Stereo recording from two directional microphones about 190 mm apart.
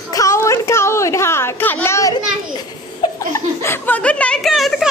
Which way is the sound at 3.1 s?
15° left (ahead or behind).